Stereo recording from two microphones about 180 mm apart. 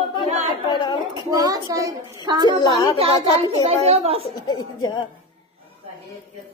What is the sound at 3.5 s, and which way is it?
Speech, 35° right (ahead or behind).